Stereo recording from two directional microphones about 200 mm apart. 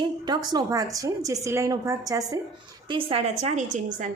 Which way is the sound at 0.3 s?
20° right (ahead or behind).